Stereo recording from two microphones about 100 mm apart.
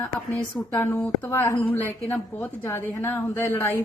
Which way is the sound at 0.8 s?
20° left (ahead or behind).